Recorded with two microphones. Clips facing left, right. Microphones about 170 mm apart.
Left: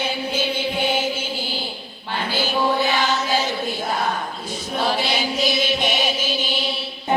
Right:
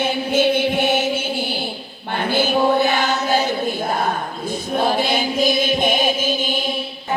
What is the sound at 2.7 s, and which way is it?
Music, 55° right (ahead or behind).